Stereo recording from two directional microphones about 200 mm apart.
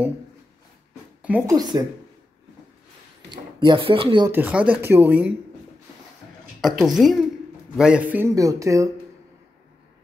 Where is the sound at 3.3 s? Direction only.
20° right (ahead or behind).